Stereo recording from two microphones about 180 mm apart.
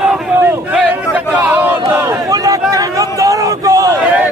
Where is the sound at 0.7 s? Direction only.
10° right (ahead or behind).